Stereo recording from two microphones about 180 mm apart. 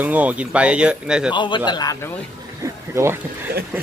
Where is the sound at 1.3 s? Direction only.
25° left (ahead or behind).